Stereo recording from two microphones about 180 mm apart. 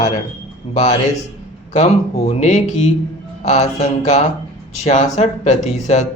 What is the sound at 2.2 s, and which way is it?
Speech, 40° left (ahead or behind).